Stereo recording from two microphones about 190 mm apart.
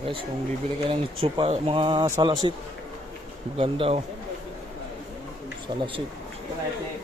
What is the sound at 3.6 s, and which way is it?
Speech, 30° right (ahead or behind).